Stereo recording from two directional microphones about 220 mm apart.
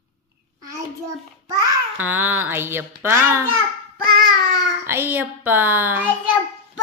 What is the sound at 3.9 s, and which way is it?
Child singing, 40° right (ahead or behind).